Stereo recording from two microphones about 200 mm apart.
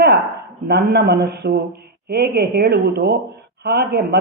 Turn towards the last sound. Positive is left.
turn(degrees=-55)  # may be behind; listen again after turning